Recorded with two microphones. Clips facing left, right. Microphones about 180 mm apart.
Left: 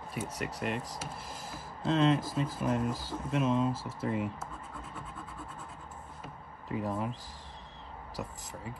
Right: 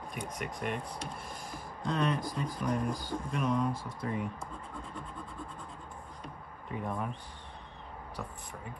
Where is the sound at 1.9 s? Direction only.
25° left (ahead or behind).